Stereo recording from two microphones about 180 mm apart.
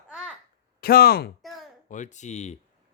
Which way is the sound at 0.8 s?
55° left (ahead or behind).